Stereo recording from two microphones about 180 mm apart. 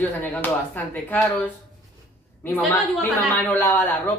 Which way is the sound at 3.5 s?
10° left (ahead or behind).